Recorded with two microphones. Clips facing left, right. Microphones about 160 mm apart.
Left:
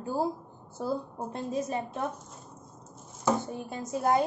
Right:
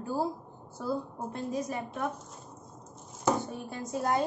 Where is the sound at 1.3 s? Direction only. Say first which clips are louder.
Left 2 dB; 25° left (ahead or behind).